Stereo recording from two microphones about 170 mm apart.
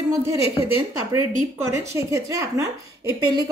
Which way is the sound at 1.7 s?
20° right (ahead or behind).